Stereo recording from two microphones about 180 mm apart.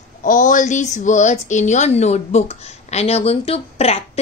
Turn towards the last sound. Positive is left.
turn(degrees=35)  # may be behind; listen again after turning